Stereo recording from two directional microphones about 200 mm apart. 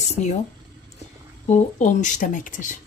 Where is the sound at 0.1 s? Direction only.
35° left (ahead or behind).